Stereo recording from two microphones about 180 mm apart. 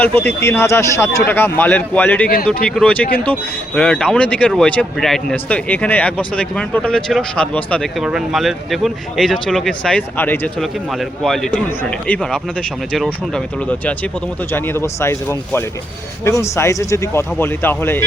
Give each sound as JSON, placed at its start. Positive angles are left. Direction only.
{"t": 0.0, "sound": "speech", "side_deg": 10}
{"t": 2.2, "sound": "speech", "side_deg": 55}
{"t": 2.6, "sound": "speech", "side_deg": 5}